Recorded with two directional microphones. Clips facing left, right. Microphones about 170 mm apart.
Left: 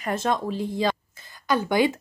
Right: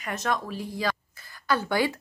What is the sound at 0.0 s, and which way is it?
Speech, 30° left (ahead or behind).